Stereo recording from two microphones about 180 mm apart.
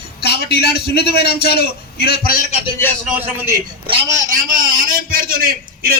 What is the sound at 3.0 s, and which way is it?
Speech, 10° right (ahead or behind).